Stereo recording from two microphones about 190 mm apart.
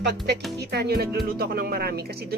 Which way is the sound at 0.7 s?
60° right (ahead or behind).